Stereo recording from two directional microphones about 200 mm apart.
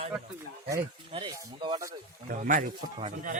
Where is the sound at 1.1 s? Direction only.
25° right (ahead or behind).